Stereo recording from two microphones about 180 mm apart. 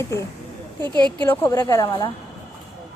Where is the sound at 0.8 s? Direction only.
25° right (ahead or behind).